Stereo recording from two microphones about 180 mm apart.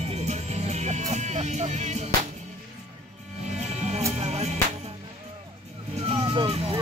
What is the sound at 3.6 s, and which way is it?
Music, 40° right (ahead or behind).